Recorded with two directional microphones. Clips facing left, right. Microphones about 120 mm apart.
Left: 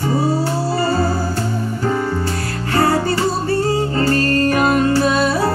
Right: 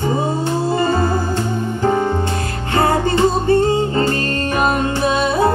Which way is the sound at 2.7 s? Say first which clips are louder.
Even; 20° right (ahead or behind).